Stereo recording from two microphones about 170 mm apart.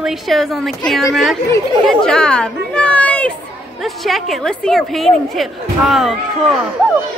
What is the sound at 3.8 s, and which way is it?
A woman's voice, centre (ahead or behind).